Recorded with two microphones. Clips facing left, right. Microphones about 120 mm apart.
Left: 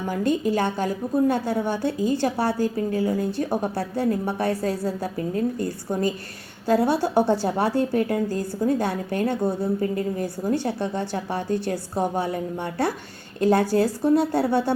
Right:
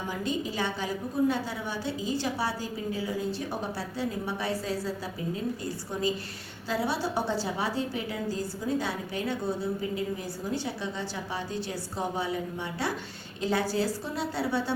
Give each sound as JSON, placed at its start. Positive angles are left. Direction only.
{"t": 0.1, "sound": "a woman's voice", "side_deg": 55}